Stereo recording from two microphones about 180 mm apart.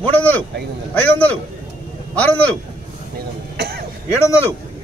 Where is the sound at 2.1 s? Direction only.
10° left (ahead or behind).